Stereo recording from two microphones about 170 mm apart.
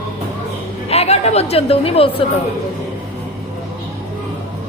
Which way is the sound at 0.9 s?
40° left (ahead or behind).